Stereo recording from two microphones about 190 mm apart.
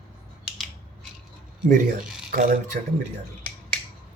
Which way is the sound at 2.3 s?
45° right (ahead or behind).